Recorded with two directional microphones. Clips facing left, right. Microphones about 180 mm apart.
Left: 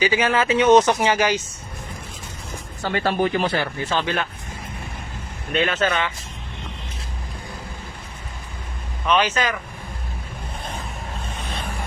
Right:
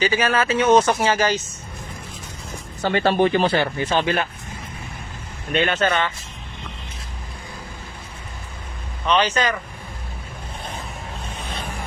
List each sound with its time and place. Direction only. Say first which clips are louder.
0.0 s speech: even; 15° left (ahead or behind)
2.8 s speech: right 3 dB; 25° right (ahead or behind)
5.5 s speech: right 1 dB; centre (ahead or behind)
9.0 s speech: right 1 dB; 5° left (ahead or behind)